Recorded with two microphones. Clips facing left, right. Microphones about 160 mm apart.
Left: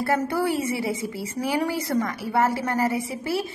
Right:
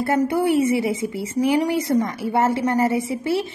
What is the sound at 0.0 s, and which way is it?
A woman's voice, 20° right (ahead or behind).